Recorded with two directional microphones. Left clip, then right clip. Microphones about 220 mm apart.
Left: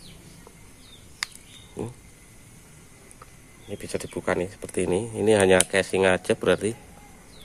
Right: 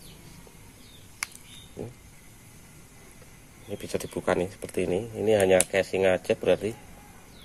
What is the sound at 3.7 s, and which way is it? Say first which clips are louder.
Speech: even; 5° left (ahead or behind).